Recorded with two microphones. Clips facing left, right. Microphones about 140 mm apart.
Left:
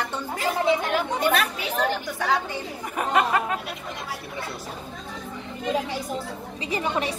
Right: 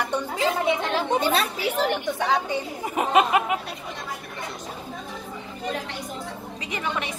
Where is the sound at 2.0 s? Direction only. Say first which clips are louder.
Right 2 dB; 20° right (ahead or behind).